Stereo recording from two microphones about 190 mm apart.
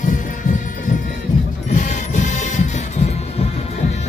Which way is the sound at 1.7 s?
40° left (ahead or behind).